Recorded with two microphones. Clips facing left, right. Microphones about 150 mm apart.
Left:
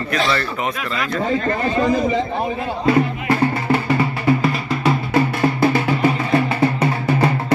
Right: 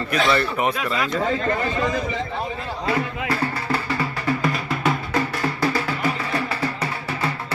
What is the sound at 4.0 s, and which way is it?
Music, 15° left (ahead or behind).